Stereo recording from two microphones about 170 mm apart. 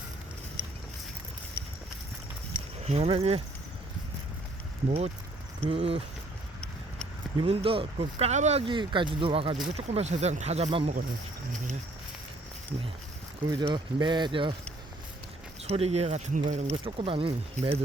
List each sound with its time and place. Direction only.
2.8 s speech: 35° right (ahead or behind)
4.9 s speech: 40° right (ahead or behind)
7.3 s speech: 35° right (ahead or behind)
13.5 s speech: 25° right (ahead or behind)
15.6 s speech: 40° right (ahead or behind)
16.7 s speech: 30° right (ahead or behind)